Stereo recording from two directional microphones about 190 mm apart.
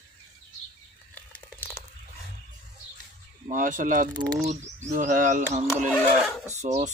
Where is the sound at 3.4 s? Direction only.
45° right (ahead or behind).